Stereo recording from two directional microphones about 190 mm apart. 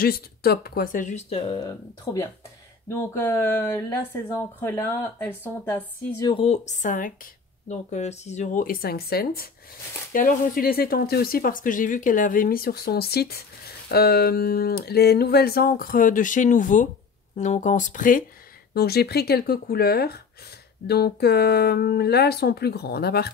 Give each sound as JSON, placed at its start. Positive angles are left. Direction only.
{"t": 0.0, "sound": "speech", "side_deg": 55}
{"t": 2.1, "sound": "a woman's voice", "side_deg": 15}
{"t": 6.2, "sound": "speech", "side_deg": 30}
{"t": 18.7, "sound": "speech", "side_deg": 55}